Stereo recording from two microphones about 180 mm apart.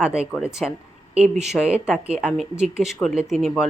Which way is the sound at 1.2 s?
40° right (ahead or behind).